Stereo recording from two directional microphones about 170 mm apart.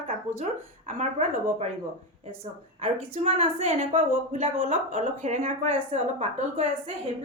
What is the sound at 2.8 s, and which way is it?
A woman's voice, 35° right (ahead or behind).